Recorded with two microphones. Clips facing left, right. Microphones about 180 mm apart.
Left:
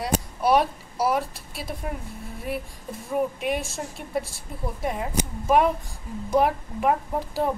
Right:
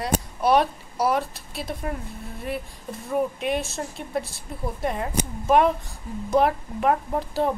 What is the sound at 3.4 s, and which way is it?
Speech, 10° left (ahead or behind).